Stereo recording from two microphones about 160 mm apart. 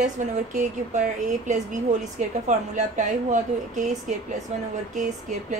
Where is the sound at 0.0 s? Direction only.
50° right (ahead or behind).